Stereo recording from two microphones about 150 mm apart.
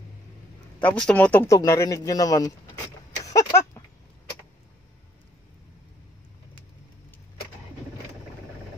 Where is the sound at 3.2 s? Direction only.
20° left (ahead or behind).